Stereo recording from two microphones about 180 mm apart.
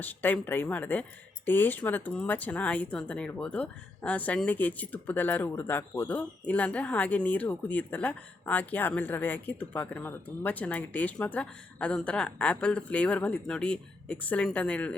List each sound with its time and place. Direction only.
0.0 s speech: 10° left (ahead or behind)